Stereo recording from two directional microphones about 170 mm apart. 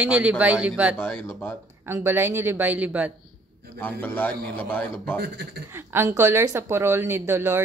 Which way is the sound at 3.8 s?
10° left (ahead or behind).